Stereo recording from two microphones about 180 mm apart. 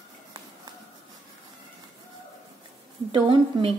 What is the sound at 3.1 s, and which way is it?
Speech, 30° right (ahead or behind).